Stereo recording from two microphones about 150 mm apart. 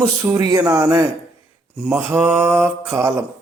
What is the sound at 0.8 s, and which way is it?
Mantra, 15° right (ahead or behind).